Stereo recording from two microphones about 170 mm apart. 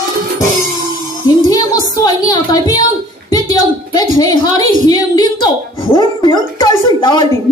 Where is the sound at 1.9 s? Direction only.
25° left (ahead or behind).